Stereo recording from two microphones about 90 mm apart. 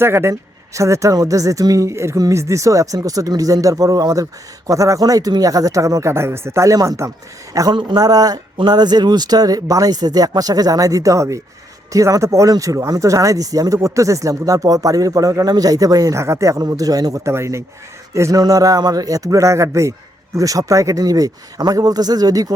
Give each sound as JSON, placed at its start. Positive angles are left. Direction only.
{"t": 0.0, "sound": "speech", "side_deg": -30}
{"t": 7.7, "sound": "speech", "side_deg": -60}
{"t": 17.3, "sound": "speech", "side_deg": -30}